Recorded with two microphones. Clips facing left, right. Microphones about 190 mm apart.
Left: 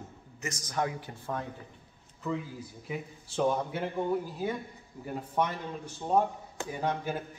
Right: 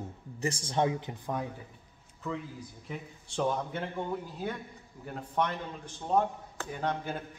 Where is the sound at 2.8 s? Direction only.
5° left (ahead or behind).